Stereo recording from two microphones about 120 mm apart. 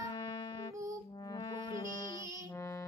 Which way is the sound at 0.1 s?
40° left (ahead or behind).